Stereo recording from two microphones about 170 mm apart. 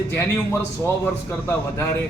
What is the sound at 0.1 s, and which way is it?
Speech, 15° left (ahead or behind).